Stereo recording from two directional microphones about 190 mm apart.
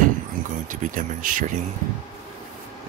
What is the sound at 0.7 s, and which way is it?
Speech, 45° right (ahead or behind).